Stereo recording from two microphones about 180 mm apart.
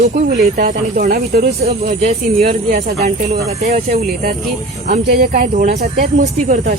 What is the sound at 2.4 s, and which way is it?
Speech, 55° right (ahead or behind).